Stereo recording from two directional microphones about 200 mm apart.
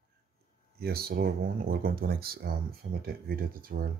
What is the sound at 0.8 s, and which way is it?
Speech, 50° right (ahead or behind).